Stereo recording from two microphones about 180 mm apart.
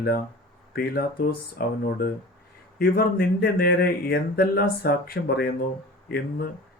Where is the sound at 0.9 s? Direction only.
55° left (ahead or behind).